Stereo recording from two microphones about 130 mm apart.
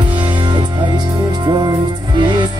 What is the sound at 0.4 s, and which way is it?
Music, 35° right (ahead or behind).